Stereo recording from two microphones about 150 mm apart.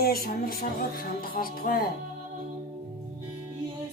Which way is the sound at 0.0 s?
90° left.